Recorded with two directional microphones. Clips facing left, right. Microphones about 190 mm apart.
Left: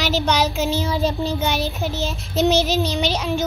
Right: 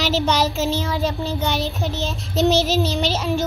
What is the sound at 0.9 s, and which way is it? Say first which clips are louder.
Child singing: left 2 dB; 20° left (ahead or behind).